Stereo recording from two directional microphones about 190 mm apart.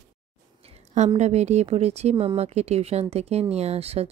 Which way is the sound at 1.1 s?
35° right (ahead or behind).